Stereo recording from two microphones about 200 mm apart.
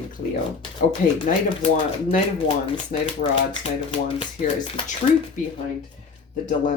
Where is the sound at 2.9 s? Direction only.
40° left (ahead or behind).